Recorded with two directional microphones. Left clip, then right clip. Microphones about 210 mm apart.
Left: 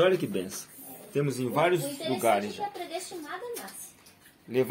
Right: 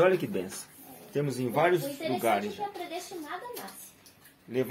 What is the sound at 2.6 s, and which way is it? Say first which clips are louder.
Speech: left 1 dB; 35° left (ahead or behind).